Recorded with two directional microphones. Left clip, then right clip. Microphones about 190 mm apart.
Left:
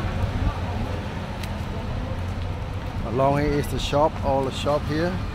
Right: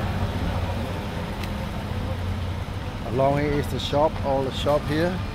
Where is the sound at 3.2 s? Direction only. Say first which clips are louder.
Left 1 dB; 15° left (ahead or behind).